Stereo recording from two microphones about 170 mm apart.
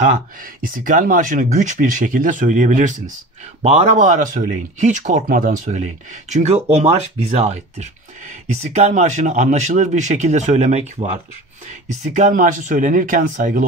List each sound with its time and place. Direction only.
0.0 s speech: 50° right (ahead or behind)